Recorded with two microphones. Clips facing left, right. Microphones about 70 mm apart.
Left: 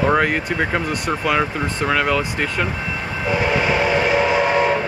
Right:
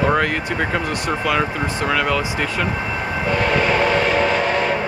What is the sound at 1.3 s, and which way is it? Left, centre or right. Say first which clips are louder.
Speech: left 1 dB; centre.